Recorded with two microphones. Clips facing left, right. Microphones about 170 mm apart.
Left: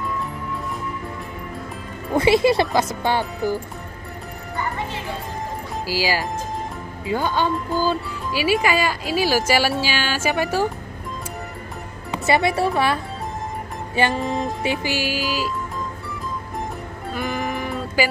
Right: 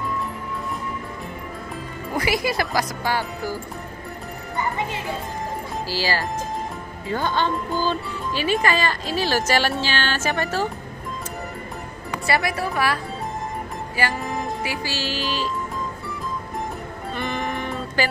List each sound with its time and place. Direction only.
2.1 s music: 25° left (ahead or behind)
5.9 s speech: 10° left (ahead or behind)
12.1 s speech: 25° left (ahead or behind)
13.9 s music: 25° left (ahead or behind); by 15.5 s 10° left (ahead or behind)
17.1 s music: 5° left (ahead or behind)